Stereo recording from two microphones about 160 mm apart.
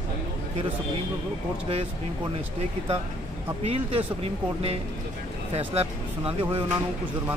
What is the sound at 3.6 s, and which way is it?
Speech, 35° right (ahead or behind).